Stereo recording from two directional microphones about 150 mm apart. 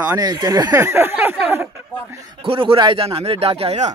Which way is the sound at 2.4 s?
35° right (ahead or behind).